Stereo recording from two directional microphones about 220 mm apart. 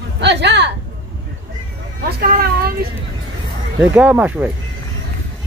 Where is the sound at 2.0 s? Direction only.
45° right (ahead or behind).